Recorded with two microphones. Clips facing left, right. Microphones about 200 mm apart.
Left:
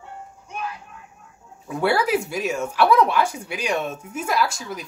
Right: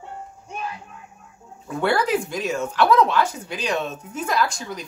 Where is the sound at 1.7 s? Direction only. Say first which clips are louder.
Even; 10° left (ahead or behind).